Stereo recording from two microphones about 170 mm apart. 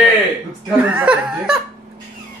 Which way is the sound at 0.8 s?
10° right (ahead or behind).